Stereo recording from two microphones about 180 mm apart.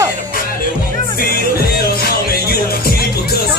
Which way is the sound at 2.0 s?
60° left (ahead or behind).